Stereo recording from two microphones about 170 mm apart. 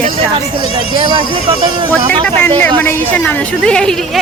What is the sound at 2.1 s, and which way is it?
A woman's voice, 10° left (ahead or behind).